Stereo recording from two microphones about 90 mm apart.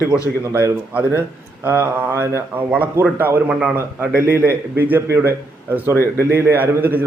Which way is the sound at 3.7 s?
25° right (ahead or behind).